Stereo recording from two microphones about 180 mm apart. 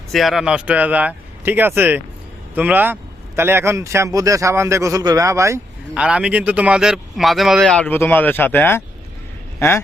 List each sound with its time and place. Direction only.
0.1 s a man's voice: centre (ahead or behind)